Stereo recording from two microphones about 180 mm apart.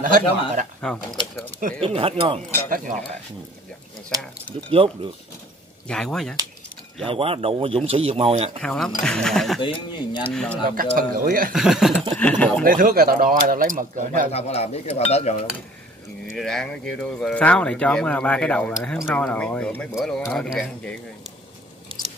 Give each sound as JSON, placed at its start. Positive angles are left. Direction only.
{"t": 0.0, "sound": "speech", "side_deg": -50}
{"t": 0.7, "sound": "speech", "side_deg": 5}
{"t": 1.8, "sound": "speech", "side_deg": -30}
{"t": 4.2, "sound": "speech", "side_deg": 5}
{"t": 4.6, "sound": "speech", "side_deg": -30}
{"t": 5.9, "sound": "speech", "side_deg": 5}
{"t": 7.1, "sound": "speech", "side_deg": -30}
{"t": 8.6, "sound": "speech", "side_deg": 5}
{"t": 9.6, "sound": "speech", "side_deg": 30}
{"t": 10.7, "sound": "speech", "side_deg": -50}
{"t": 11.5, "sound": "speech", "side_deg": -5}
{"t": 12.6, "sound": "speech", "side_deg": -50}
{"t": 14.3, "sound": "speech", "side_deg": 35}
{"t": 16.3, "sound": "speech", "side_deg": 0}